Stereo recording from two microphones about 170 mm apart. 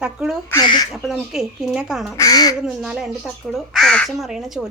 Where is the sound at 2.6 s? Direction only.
5° right (ahead or behind).